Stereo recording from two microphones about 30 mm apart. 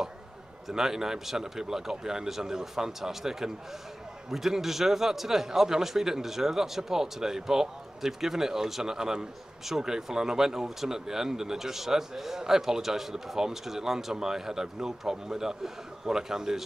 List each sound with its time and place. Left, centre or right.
0.7 s a man's voice: centre